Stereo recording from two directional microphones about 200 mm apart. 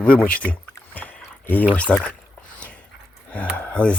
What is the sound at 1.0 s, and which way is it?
Rowboat, 10° left (ahead or behind).